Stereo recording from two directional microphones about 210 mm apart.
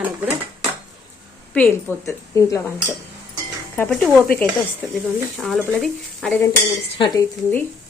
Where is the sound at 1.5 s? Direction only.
10° left (ahead or behind).